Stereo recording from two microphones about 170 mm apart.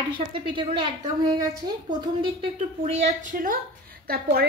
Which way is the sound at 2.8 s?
45° right (ahead or behind).